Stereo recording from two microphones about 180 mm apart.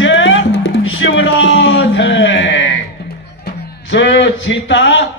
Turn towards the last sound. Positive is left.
turn(degrees=90)